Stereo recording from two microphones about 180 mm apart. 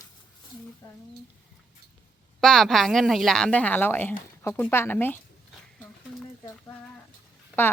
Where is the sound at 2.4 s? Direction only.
5° left (ahead or behind).